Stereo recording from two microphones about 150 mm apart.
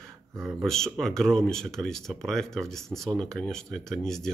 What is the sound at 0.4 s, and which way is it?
Speech, 5° right (ahead or behind).